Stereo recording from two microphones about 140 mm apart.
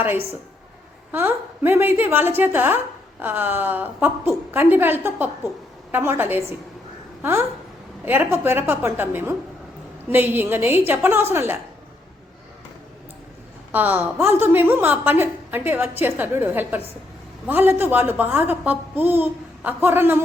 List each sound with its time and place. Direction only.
1.1 s a woman's voice: 15° right (ahead or behind)
13.7 s a woman's voice: 10° right (ahead or behind)